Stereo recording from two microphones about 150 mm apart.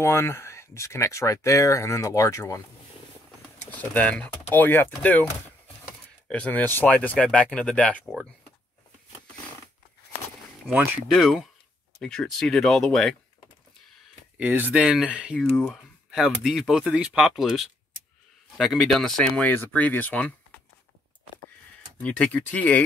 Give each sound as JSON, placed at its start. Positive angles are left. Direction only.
{"t": 0.0, "sound": "speech", "side_deg": 15}
{"t": 3.7, "sound": "speech", "side_deg": 10}
{"t": 10.7, "sound": "speech", "side_deg": -5}
{"t": 14.3, "sound": "speech", "side_deg": -10}
{"t": 22.0, "sound": "speech", "side_deg": 5}